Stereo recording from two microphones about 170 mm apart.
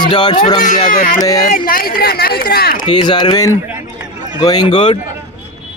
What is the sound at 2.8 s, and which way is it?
Speech, 25° left (ahead or behind).